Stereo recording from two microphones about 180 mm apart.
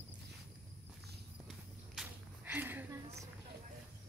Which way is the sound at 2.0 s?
10° right (ahead or behind).